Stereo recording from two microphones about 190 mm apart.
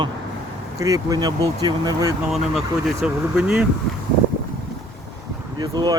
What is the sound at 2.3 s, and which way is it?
Speech, centre (ahead or behind).